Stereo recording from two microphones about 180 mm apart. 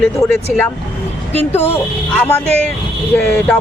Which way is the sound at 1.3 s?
10° left (ahead or behind).